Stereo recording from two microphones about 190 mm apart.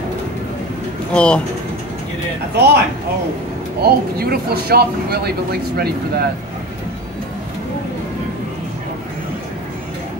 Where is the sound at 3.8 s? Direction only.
55° right (ahead or behind).